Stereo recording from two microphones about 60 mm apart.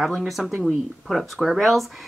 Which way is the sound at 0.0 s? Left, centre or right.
Centre.